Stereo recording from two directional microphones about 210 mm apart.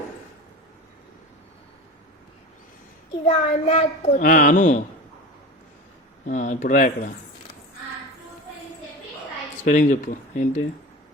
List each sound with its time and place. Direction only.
3.2 s a child's voice: 30° left (ahead or behind)
6.2 s a child's voice: 35° left (ahead or behind)
9.6 s a child's voice: 35° left (ahead or behind)